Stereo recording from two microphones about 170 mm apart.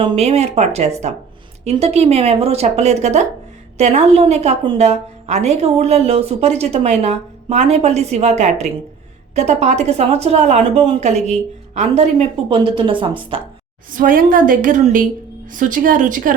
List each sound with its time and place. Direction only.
0.0 s a woman's voice: 35° right (ahead or behind)
13.9 s a woman's voice: 55° right (ahead or behind)